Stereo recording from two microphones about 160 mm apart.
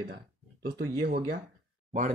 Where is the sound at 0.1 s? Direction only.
75° right (ahead or behind).